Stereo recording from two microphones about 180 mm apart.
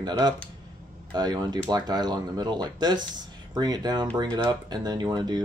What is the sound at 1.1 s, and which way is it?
Speech, 25° right (ahead or behind).